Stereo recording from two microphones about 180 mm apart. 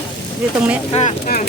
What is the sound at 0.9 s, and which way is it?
Speech, 35° left (ahead or behind).